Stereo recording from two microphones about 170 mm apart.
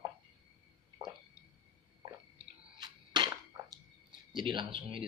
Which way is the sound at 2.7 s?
25° right (ahead or behind).